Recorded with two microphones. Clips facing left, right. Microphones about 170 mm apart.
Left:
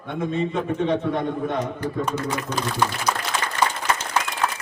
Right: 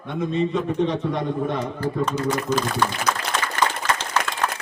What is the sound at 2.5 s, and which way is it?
Speech, 60° left (ahead or behind).